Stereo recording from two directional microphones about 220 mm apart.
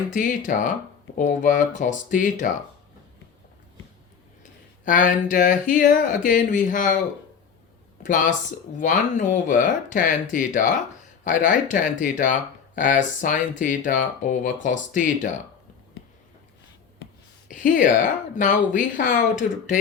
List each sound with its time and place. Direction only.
0.1 s speech: 35° left (ahead or behind)
4.9 s speech: 35° left (ahead or behind)
8.0 s speech: 35° left (ahead or behind)
17.5 s speech: 35° left (ahead or behind)